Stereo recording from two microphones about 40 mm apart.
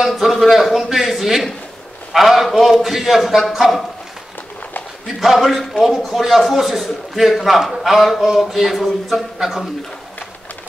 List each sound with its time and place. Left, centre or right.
0.0 s a man's voice: centre
5.0 s a man's voice: centre